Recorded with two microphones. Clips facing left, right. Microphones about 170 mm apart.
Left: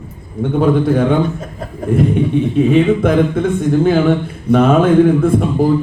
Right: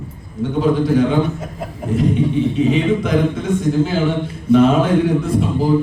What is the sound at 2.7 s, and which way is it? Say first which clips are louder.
A man's voice: left 4 dB; 55° left (ahead or behind).